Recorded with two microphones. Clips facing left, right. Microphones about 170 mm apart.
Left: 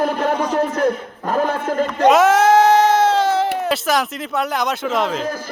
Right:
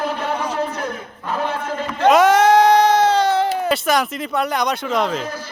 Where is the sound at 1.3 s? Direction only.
45° left (ahead or behind).